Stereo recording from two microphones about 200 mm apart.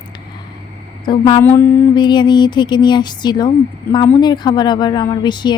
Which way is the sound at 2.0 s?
20° left (ahead or behind).